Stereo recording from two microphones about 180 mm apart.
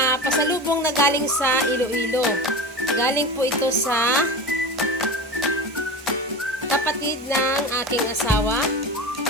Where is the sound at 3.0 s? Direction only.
15° left (ahead or behind).